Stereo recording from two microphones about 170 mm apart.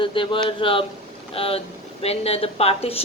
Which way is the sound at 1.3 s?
35° left (ahead or behind).